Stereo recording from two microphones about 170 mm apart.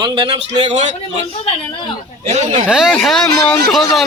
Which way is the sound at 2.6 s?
5° right (ahead or behind).